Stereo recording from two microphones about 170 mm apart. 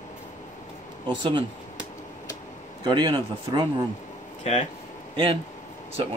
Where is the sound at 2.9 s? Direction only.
25° right (ahead or behind).